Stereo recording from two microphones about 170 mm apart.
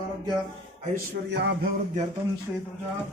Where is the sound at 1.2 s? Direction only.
85° right.